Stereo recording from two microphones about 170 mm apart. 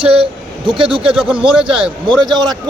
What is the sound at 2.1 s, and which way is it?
Speech, centre (ahead or behind).